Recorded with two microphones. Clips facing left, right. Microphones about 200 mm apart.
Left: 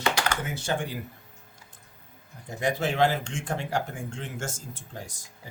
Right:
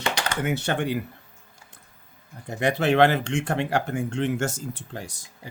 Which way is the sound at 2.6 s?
65° right (ahead or behind).